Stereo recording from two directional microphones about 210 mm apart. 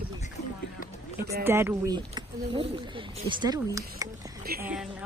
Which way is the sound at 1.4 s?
10° right (ahead or behind).